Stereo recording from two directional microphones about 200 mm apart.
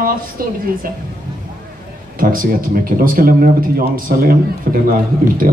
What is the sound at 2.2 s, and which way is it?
A woman's voice, 45° right (ahead or behind).